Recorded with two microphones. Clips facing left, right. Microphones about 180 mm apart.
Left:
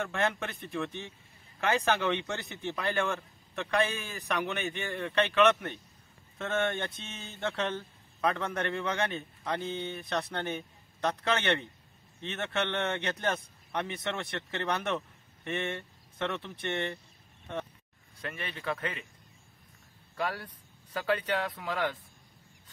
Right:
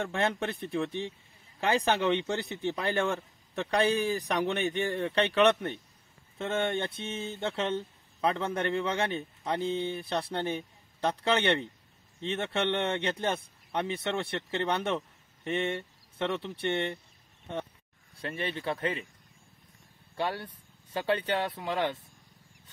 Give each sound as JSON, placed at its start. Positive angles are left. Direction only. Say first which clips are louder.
{"t": 0.1, "sound": "a man's voice", "louder": "right 2 dB", "side_deg": -35}
{"t": 18.2, "sound": "a man's voice", "louder": "right 4 dB", "side_deg": -30}
{"t": 20.2, "sound": "speech", "louder": "right 2 dB", "side_deg": -25}